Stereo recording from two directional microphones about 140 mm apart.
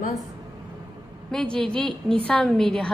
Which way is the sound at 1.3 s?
5° left (ahead or behind).